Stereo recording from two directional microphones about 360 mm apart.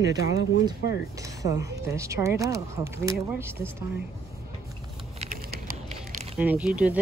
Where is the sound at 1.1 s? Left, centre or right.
Centre.